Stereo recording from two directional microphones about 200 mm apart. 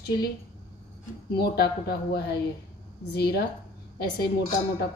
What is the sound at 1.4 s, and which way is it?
A woman's voice, 55° left (ahead or behind).